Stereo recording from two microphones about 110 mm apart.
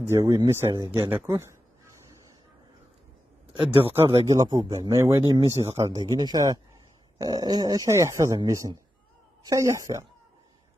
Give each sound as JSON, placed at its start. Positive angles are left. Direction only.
{"t": 0.1, "sound": "speech", "side_deg": -25}
{"t": 3.5, "sound": "speech", "side_deg": -55}
{"t": 4.3, "sound": "speech", "side_deg": -35}